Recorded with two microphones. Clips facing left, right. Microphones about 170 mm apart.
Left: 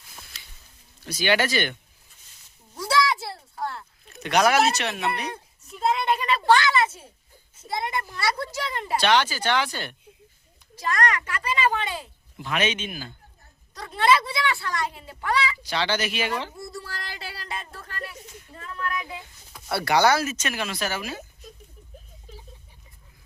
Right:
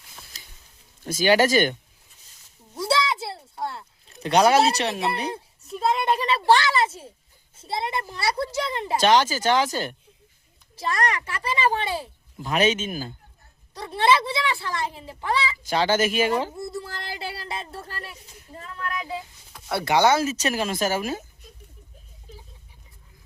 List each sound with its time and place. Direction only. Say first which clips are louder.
0.3 s a sound: right 1 dB; 40° right (ahead or behind)
1.0 s speech: right 4 dB; 45° right (ahead or behind)
2.7 s a sound: even; 25° right (ahead or behind)
7.6 s a child's voice: right 1 dB; 30° right (ahead or behind)
9.0 s speech: right 3 dB; 40° right (ahead or behind)
10.8 s a child's voice: even; 25° right (ahead or behind)
13.7 s a child's voice: right 1 dB; 25° right (ahead or behind)
15.6 s speech: right 5 dB; 45° right (ahead or behind)
16.5 s a child's voice: right 4 dB; 25° right (ahead or behind)
19.7 s a child's voice: right 1 dB; 20° right (ahead or behind)
20.3 s speech: right 5 dB; 35° right (ahead or behind)